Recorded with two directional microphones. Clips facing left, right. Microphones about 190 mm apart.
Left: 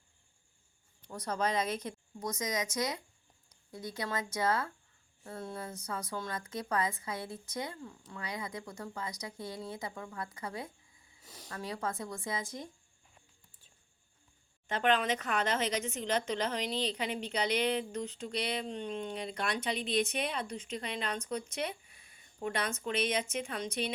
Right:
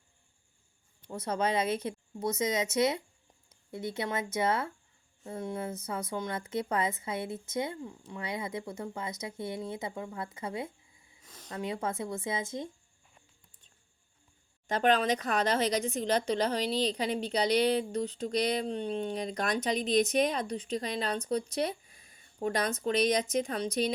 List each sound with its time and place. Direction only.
1.1 s speech: 25° right (ahead or behind)
14.7 s speech: 40° right (ahead or behind)